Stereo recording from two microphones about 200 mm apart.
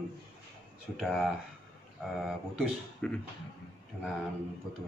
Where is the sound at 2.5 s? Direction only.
5° left (ahead or behind).